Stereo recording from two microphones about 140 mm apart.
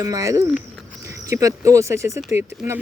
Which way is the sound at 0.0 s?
20° right (ahead or behind).